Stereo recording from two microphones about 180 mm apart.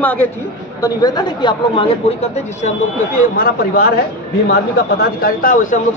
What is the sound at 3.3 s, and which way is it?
Speech, 55° left (ahead or behind).